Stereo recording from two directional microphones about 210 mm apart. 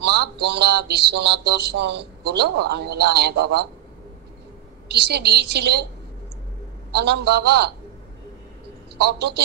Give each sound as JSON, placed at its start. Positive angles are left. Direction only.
{"t": 0.0, "sound": "speech", "side_deg": -55}
{"t": 4.8, "sound": "speech", "side_deg": -55}
{"t": 6.9, "sound": "speech", "side_deg": -55}
{"t": 8.9, "sound": "speech", "side_deg": -55}